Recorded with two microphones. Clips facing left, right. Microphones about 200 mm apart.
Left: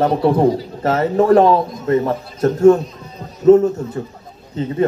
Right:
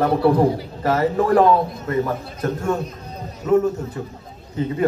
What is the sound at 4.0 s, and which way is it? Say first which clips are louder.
Speech: left 4 dB; 30° left (ahead or behind).